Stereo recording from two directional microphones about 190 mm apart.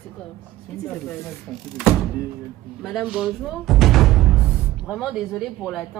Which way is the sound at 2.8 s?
Centre (ahead or behind).